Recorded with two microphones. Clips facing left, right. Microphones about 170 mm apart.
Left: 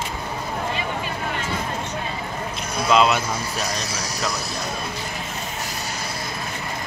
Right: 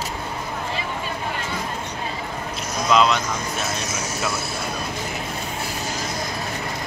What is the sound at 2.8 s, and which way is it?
Speech, 5° left (ahead or behind).